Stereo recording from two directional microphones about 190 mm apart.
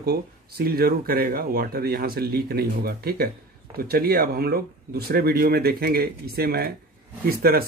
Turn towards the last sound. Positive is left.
turn(degrees=-55)  # may be behind; listen again after turning